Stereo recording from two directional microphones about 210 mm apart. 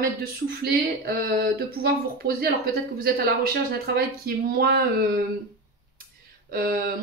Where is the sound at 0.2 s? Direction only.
45° right (ahead or behind).